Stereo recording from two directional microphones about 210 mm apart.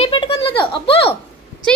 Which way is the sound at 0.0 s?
25° left (ahead or behind).